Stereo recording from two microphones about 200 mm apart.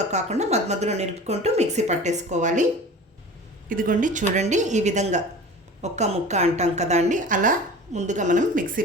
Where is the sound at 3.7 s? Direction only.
45° right (ahead or behind).